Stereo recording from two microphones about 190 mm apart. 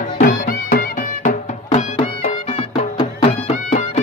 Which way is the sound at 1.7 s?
35° left (ahead or behind).